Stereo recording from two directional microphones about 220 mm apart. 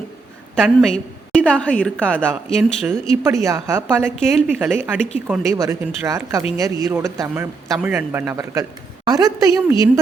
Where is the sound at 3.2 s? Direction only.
15° right (ahead or behind).